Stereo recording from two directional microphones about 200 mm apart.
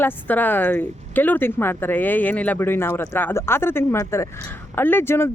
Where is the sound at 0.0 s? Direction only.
10° left (ahead or behind).